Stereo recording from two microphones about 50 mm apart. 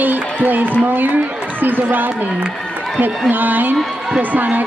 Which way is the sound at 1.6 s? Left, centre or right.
Right.